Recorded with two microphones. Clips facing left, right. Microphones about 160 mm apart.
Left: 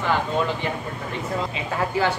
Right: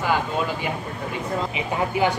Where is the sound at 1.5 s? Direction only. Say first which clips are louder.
Even; 15° right (ahead or behind).